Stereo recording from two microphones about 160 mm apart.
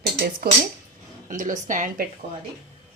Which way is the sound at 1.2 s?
55° right (ahead or behind).